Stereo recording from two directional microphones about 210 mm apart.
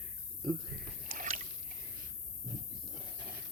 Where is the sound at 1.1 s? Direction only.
40° right (ahead or behind).